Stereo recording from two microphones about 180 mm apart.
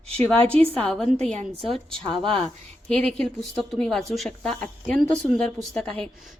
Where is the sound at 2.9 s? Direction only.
5° left (ahead or behind).